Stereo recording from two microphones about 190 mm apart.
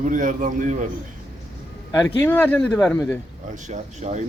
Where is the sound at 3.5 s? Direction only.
40° right (ahead or behind).